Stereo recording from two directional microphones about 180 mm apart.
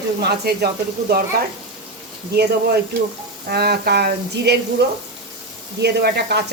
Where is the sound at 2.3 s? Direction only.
65° right (ahead or behind).